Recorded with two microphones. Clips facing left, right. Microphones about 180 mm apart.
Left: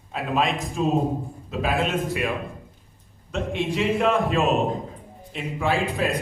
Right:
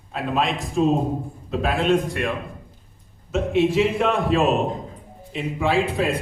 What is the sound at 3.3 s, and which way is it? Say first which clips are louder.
A man's voice: right 6 dB; centre (ahead or behind).